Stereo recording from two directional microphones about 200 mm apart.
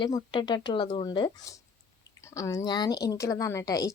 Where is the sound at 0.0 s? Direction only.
25° left (ahead or behind).